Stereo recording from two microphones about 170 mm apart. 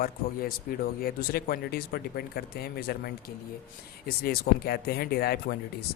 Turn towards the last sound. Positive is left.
turn(degrees=65)  # may be behind; listen again after turning